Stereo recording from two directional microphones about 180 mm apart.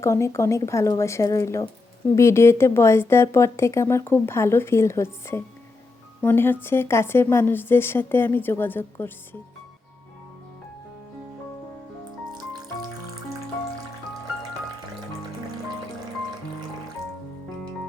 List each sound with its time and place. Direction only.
0.0 s speech: 15° left (ahead or behind)
12.3 s music: 25° right (ahead or behind)